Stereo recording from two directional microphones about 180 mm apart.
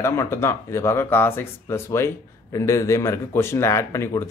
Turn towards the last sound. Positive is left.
turn(degrees=15)  # may be behind; listen again after turning